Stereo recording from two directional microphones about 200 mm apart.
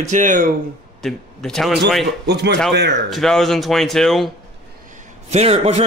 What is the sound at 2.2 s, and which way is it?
Speech, 55° right (ahead or behind).